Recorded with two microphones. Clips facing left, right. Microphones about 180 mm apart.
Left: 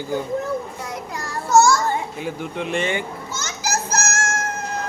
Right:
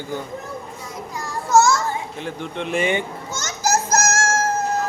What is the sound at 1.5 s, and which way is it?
Child singing, 20° right (ahead or behind).